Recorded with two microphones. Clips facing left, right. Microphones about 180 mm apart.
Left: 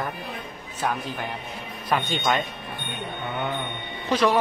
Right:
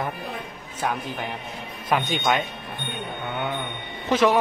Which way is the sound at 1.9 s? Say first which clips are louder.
Right 1 dB; 15° right (ahead or behind).